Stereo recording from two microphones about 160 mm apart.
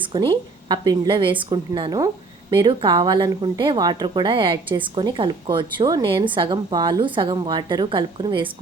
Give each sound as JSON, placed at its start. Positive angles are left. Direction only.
{"t": 0.0, "sound": "speech", "side_deg": -30}